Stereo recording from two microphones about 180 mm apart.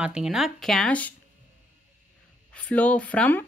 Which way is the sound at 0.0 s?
5° right (ahead or behind).